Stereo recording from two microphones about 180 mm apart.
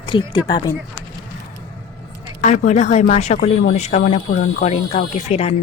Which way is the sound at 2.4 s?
40° left (ahead or behind).